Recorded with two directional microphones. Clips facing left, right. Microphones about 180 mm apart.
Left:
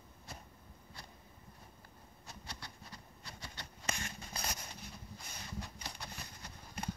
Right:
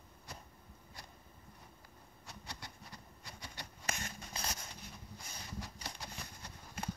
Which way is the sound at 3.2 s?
15° right (ahead or behind).